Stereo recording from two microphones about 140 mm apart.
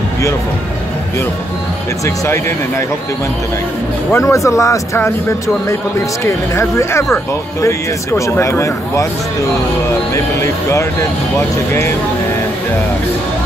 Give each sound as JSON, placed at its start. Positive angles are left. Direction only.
{"t": 2.0, "sound": "speech", "side_deg": 20}
{"t": 4.1, "sound": "speech", "side_deg": 20}
{"t": 6.5, "sound": "speech", "side_deg": 20}
{"t": 10.1, "sound": "speech", "side_deg": 20}